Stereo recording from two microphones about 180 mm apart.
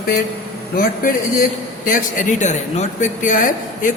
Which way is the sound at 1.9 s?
45° left (ahead or behind).